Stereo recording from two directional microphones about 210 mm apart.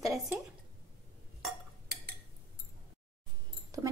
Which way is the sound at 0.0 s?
Centre (ahead or behind).